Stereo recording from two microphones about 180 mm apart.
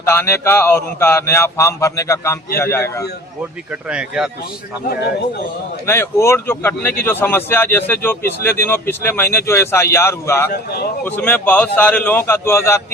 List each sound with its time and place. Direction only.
0.1 s speech: 15° left (ahead or behind)
3.8 s speech: 5° right (ahead or behind)
5.8 s speech: 15° left (ahead or behind)
10.5 s speech: 60° left (ahead or behind)
11.0 s speech: 10° left (ahead or behind)